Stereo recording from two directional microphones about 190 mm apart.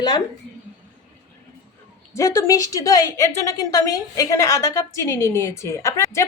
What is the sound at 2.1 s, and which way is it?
A woman's voice, 15° left (ahead or behind).